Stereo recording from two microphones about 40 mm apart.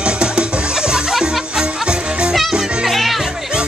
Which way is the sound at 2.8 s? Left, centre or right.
Centre.